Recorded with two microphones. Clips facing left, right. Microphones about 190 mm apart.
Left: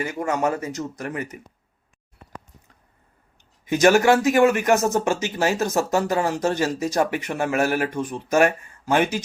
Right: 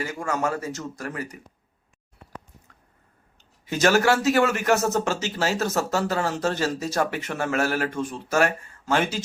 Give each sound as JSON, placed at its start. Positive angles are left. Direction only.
{"t": 0.0, "sound": "speech", "side_deg": 20}
{"t": 3.7, "sound": "speech", "side_deg": 15}